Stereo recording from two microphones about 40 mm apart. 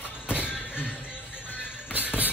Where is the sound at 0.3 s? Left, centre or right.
Left.